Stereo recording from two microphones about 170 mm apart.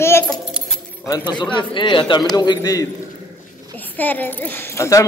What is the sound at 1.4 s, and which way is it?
A woman's voice, 30° left (ahead or behind).